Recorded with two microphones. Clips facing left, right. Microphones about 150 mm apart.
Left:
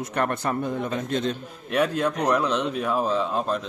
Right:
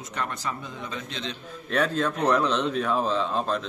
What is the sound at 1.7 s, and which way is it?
Speech, 10° left (ahead or behind).